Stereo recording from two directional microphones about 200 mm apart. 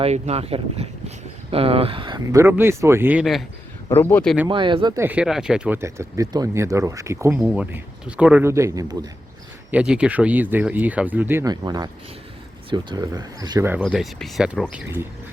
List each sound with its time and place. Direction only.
0.0 s speech: 30° right (ahead or behind); by 3.4 s 5° right (ahead or behind)
3.9 s speech: 10° left (ahead or behind)
4.4 s speech: 25° right (ahead or behind)
4.9 s speech: 5° right (ahead or behind)
7.3 s speech: 5° right (ahead or behind)
9.7 s speech: 5° right (ahead or behind)
13.8 s speech: centre (ahead or behind)